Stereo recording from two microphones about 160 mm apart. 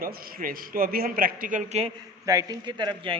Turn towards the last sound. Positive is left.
turn(degrees=-30)  # may be behind; listen again after turning